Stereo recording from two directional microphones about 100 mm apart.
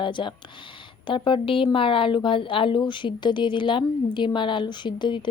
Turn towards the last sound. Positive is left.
turn(degrees=50)  # may be behind; listen again after turning